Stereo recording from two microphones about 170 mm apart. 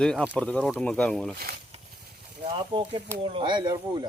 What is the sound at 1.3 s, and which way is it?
Speech, 65° right (ahead or behind).